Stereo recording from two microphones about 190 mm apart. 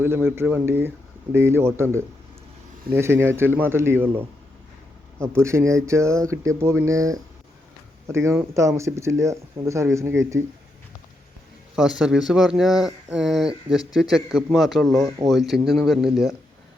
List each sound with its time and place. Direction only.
0.0 s speech: 10° right (ahead or behind)
5.4 s speech: 15° right (ahead or behind)
11.8 s speech: 5° right (ahead or behind)